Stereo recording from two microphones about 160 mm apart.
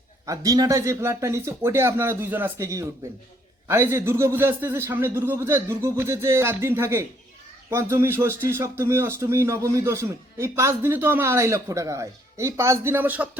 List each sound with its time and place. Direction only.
0.3 s speech: 20° right (ahead or behind)